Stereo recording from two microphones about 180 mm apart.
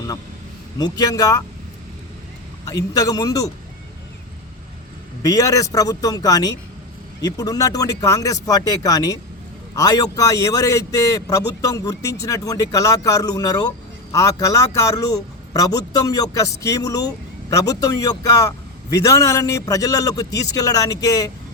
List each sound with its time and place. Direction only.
0.8 s a man's voice: 20° left (ahead or behind)
2.6 s a man's voice: 20° left (ahead or behind)
5.2 s a man's voice: 20° left (ahead or behind)